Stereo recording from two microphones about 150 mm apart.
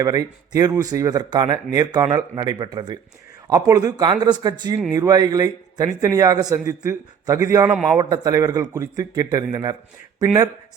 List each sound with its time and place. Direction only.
0.0 s speech: 25° right (ahead or behind)
7.7 s a man's voice: 5° right (ahead or behind)
7.9 s speech: 25° right (ahead or behind)